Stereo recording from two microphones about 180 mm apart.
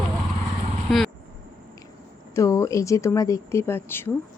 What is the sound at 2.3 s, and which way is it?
Speech, 15° left (ahead or behind).